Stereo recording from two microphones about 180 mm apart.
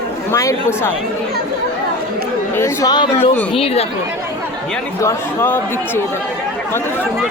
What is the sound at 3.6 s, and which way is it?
Speech, 35° left (ahead or behind).